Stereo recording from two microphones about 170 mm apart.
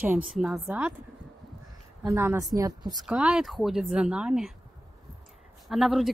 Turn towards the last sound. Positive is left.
turn(degrees=0)  # may be behind; listen again after turning